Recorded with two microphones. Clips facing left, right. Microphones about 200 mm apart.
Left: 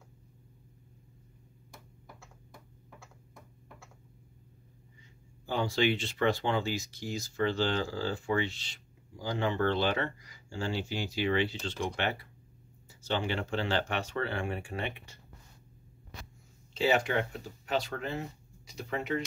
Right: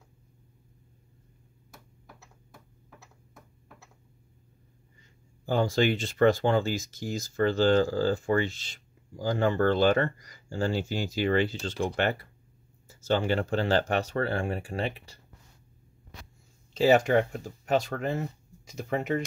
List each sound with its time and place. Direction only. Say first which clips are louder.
3.0 s a sound: left 1 dB; 5° right (ahead or behind)
5.4 s speech: right 4 dB; 45° right (ahead or behind)
16.7 s speech: right 7 dB; 45° right (ahead or behind)